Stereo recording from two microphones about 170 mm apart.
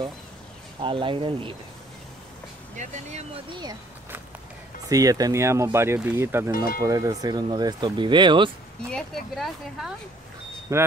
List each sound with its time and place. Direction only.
0.7 s speech: 30° right (ahead or behind)
2.7 s speech: 45° right (ahead or behind)
3.4 s speech: 25° right (ahead or behind)
4.8 s speech: 20° right (ahead or behind)
6.5 s speech: 60° left (ahead or behind)
6.8 s speech: 20° right (ahead or behind)
8.9 s speech: centre (ahead or behind)
10.7 s speech: 15° right (ahead or behind)